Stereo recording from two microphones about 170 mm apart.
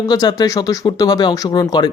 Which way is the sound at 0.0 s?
25° left (ahead or behind).